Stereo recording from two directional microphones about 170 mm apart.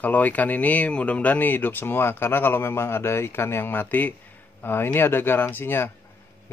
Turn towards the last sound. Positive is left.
turn(degrees=15)  # may be behind; listen again after turning